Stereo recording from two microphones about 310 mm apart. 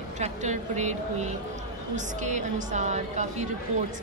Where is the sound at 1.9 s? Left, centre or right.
Right.